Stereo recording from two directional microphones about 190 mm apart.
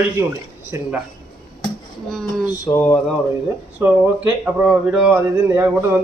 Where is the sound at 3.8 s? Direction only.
5° right (ahead or behind).